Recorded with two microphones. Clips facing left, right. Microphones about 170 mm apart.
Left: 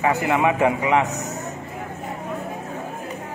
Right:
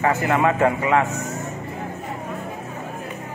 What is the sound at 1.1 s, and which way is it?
Speech, 40° left (ahead or behind).